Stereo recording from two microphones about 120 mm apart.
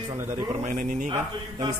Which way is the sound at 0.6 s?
90° right.